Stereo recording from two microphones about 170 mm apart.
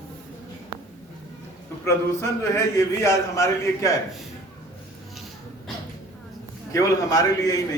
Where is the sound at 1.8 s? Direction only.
15° left (ahead or behind).